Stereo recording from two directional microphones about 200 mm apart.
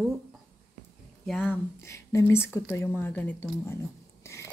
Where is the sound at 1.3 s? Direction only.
Centre (ahead or behind).